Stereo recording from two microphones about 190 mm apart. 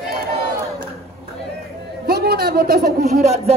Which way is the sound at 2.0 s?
55° right (ahead or behind).